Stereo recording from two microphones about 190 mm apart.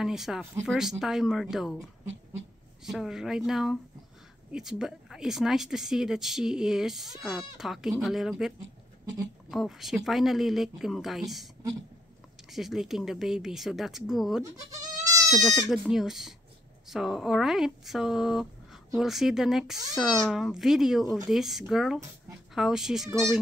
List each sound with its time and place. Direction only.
0.0 s speech: centre (ahead or behind)
2.8 s speech: centre (ahead or behind)
12.4 s speech: centre (ahead or behind)